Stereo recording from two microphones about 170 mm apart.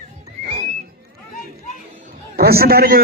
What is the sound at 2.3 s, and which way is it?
Speech, 65° right (ahead or behind).